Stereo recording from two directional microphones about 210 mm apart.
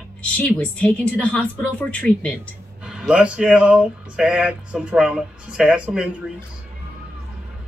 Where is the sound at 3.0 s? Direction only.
5° right (ahead or behind).